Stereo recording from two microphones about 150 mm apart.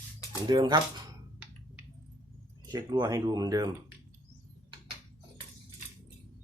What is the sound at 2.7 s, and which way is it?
Speech, 25° right (ahead or behind).